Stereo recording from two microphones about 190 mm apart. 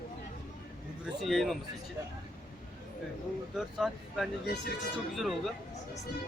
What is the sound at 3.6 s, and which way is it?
A man's voice, centre (ahead or behind).